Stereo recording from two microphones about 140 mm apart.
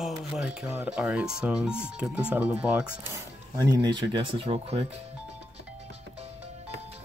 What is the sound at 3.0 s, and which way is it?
Speech, 20° right (ahead or behind).